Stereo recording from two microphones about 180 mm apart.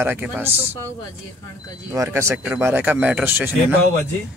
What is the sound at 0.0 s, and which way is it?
Speech, 10° right (ahead or behind).